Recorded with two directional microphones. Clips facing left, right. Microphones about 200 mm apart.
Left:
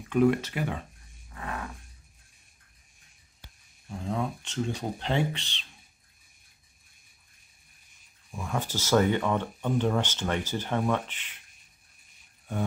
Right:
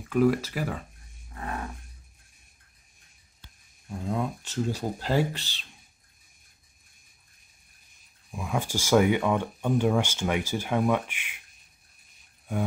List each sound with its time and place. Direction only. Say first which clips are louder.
0.1 s speech: even; centre (ahead or behind)
1.3 s roar: right 2 dB; 35° right (ahead or behind)
4.0 s speech: right 1 dB; 5° right (ahead or behind)
8.5 s speech: right 2 dB; 10° right (ahead or behind)